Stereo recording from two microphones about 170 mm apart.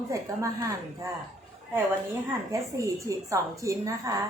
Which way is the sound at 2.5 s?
15° right (ahead or behind).